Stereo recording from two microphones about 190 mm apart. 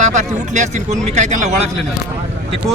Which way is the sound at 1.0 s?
40° right (ahead or behind).